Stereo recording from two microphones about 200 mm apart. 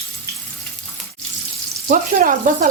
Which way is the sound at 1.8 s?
45° right (ahead or behind).